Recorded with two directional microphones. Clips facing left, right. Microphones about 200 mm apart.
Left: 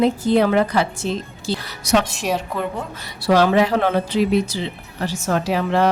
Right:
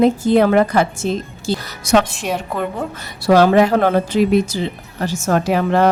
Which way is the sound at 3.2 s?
45° right (ahead or behind).